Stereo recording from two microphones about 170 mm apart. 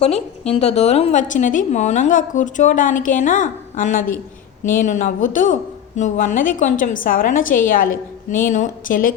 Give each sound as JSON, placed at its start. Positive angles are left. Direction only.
{"t": 0.0, "sound": "a woman's voice", "side_deg": 40}